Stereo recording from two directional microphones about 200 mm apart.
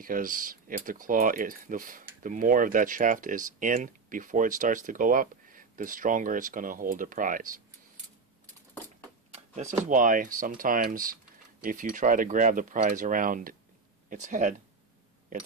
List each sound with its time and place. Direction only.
0.0 s speech: 45° right (ahead or behind)
9.3 s a sound: 35° right (ahead or behind)
9.8 s speech: 40° right (ahead or behind)